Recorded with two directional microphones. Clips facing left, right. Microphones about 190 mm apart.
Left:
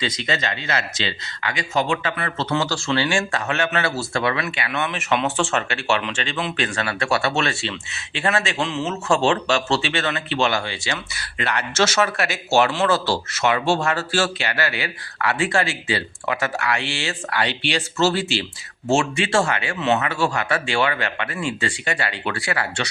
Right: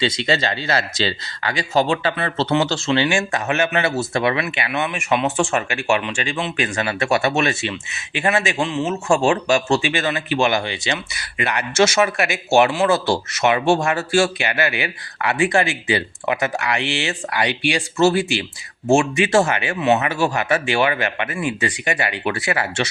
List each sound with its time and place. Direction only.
0.0 s speech: 30° right (ahead or behind)